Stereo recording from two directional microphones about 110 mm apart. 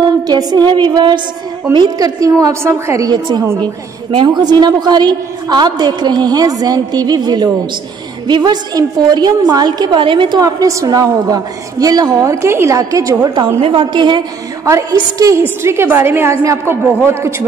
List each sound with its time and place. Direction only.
0.3 s a woman's voice: 40° right (ahead or behind)
3.1 s a woman's voice: 40° right (ahead or behind)
10.4 s a woman's voice: 30° right (ahead or behind)
13.6 s a woman's voice: 55° right (ahead or behind)
14.6 s a woman's voice: 30° right (ahead or behind)